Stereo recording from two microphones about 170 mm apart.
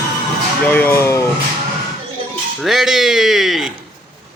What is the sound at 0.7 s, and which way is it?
Speech, 10° left (ahead or behind).